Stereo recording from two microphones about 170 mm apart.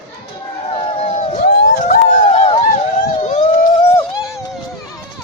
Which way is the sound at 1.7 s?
45° left (ahead or behind).